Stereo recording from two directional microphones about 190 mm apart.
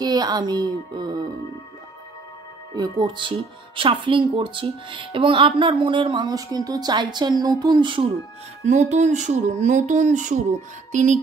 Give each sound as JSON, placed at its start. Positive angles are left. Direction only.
{"t": 0.0, "sound": "speech", "side_deg": -20}
{"t": 2.7, "sound": "speech", "side_deg": -20}
{"t": 8.6, "sound": "speech", "side_deg": -40}